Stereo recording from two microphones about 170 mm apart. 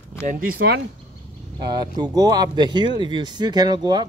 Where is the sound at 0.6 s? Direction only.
70° right (ahead or behind).